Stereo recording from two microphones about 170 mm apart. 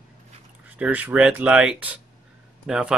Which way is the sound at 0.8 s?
10° right (ahead or behind).